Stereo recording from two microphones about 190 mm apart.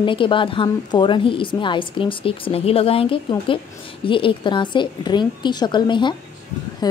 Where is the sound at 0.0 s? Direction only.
25° left (ahead or behind).